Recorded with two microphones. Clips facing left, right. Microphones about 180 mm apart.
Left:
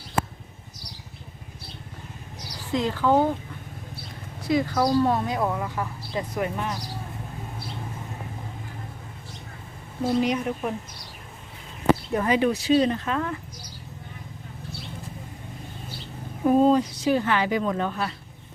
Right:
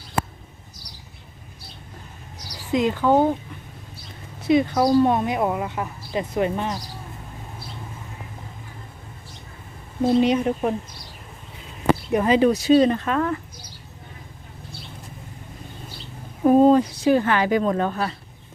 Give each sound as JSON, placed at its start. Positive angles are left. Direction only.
{"t": 2.7, "sound": "speech", "side_deg": -20}
{"t": 4.4, "sound": "speech", "side_deg": -20}
{"t": 10.2, "sound": "speech", "side_deg": -30}
{"t": 12.1, "sound": "speech", "side_deg": -20}
{"t": 12.4, "sound": "speech", "side_deg": -40}
{"t": 16.4, "sound": "speech", "side_deg": -50}